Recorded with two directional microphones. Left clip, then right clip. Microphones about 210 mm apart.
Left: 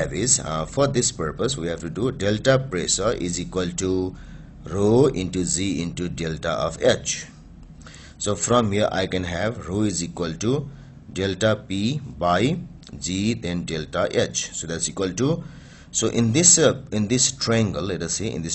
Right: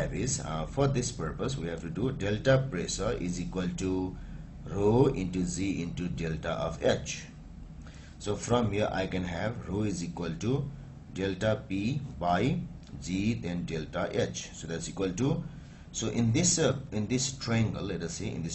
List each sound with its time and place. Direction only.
0.1 s speech: 45° left (ahead or behind)
8.4 s speech: 45° left (ahead or behind)